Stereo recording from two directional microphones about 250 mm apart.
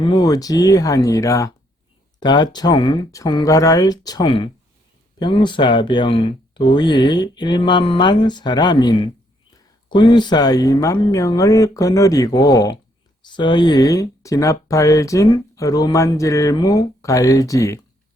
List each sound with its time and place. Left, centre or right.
0.0 s speech: centre